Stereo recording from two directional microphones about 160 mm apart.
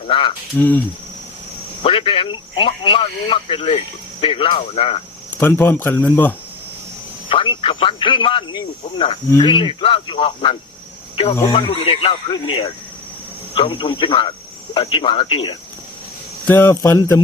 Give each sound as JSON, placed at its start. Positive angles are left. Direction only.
{"t": 0.1, "sound": "speech", "side_deg": 35}
{"t": 0.5, "sound": "speech", "side_deg": 15}
{"t": 1.8, "sound": "speech", "side_deg": 35}
{"t": 5.3, "sound": "speech", "side_deg": 10}
{"t": 7.3, "sound": "speech", "side_deg": 30}
{"t": 11.6, "sound": "speech", "side_deg": 35}
{"t": 16.5, "sound": "speech", "side_deg": 15}